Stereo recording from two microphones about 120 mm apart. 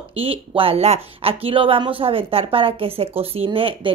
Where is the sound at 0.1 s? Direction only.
50° right (ahead or behind).